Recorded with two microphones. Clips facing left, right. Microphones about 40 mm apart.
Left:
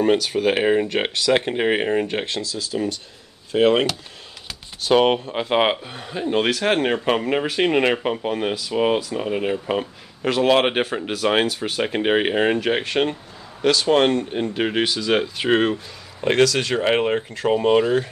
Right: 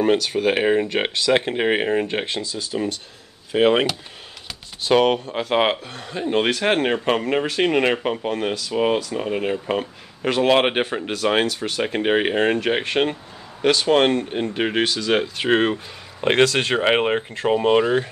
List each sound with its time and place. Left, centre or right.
0.0 s speech: centre
4.5 s a sound: centre
5.0 s speech: centre
6.1 s speech: centre
15.7 s speech: right
17.5 s speech: centre